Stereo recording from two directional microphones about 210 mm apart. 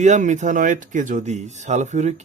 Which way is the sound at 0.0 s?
35° right (ahead or behind).